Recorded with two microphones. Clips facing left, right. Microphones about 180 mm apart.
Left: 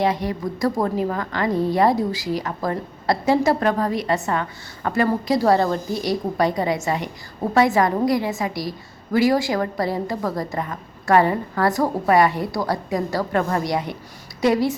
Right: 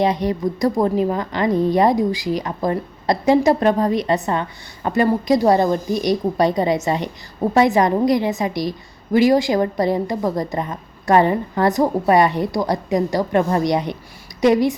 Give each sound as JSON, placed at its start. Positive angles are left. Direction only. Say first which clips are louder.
{"t": 0.0, "sound": "a woman's voice", "louder": "right 3 dB", "side_deg": -20}